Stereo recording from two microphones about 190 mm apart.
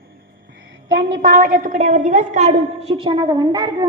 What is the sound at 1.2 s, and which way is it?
A woman's voice, 45° right (ahead or behind).